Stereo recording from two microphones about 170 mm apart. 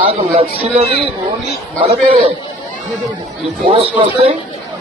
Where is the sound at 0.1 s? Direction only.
35° right (ahead or behind).